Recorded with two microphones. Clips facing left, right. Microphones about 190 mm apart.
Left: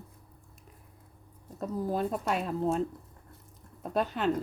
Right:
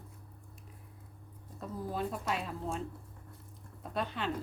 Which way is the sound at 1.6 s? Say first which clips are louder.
Left 6 dB; 45° left (ahead or behind).